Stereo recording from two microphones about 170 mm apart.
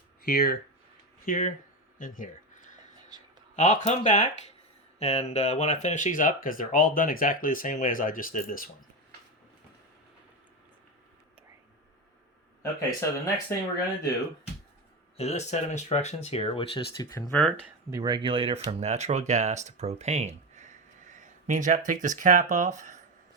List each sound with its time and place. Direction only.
0.2 s speech: 60° left (ahead or behind)
3.5 s speech: 45° left (ahead or behind)
13.0 s speech: 20° left (ahead or behind)
15.2 s speech: 40° left (ahead or behind); by 17.3 s 20° left (ahead or behind)
17.9 s speech: 25° right (ahead or behind); by 20.7 s 40° right (ahead or behind)
21.1 s a sound: 45° right (ahead or behind)
21.8 s speech: 45° right (ahead or behind)